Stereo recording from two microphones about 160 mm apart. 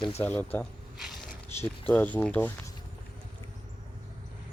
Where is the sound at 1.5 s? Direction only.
15° left (ahead or behind).